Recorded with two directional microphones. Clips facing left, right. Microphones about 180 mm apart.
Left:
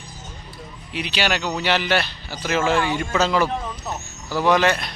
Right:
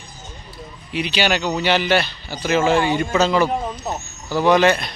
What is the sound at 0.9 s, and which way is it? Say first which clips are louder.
Speech: right 3 dB; centre (ahead or behind).